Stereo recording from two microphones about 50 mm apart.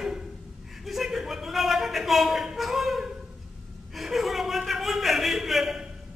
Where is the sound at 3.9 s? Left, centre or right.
Centre.